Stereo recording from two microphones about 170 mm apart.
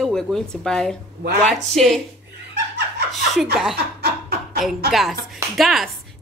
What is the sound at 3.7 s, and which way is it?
Chuckle, 75° right (ahead or behind).